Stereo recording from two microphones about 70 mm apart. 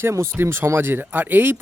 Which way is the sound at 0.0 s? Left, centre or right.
Right.